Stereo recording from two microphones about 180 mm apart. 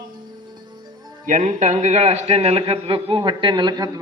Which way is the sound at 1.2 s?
45° right (ahead or behind).